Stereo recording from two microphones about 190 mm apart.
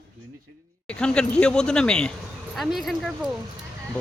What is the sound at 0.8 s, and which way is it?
Speech, 5° left (ahead or behind).